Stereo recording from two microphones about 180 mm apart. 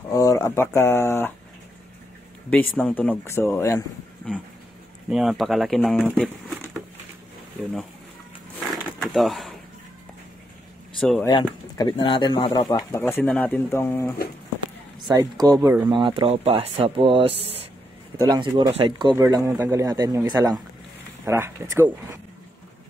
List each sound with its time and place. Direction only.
0.1 s speech: 20° left (ahead or behind)
2.8 s speech: 5° left (ahead or behind)
5.1 s speech: centre (ahead or behind)
8.6 s a sound: centre (ahead or behind)
11.0 s speech: 5° left (ahead or behind)
11.2 s speech: 20° left (ahead or behind)
15.0 s speech: 25° right (ahead or behind)
19.1 s speech: 15° right (ahead or behind)